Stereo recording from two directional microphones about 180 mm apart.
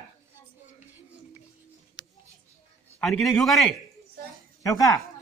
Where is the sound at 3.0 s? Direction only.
Centre (ahead or behind).